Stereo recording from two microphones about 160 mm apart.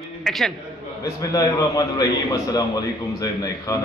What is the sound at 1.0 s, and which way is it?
A man's voice, 20° left (ahead or behind).